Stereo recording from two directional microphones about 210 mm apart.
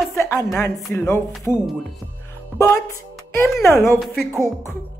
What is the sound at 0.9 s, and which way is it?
Speech, 15° left (ahead or behind).